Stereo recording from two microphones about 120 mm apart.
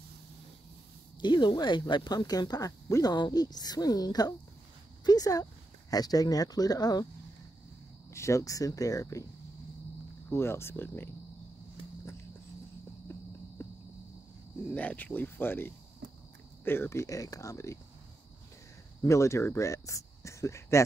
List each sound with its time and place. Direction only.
1.2 s speech: 40° left (ahead or behind)
8.1 s speech: 25° left (ahead or behind)
10.3 s speech: 20° left (ahead or behind)
13.1 s a sound: 20° left (ahead or behind)
13.6 s cricket: 20° left (ahead or behind)
14.7 s speech: 15° left (ahead or behind)
19.0 s speech: 25° left (ahead or behind)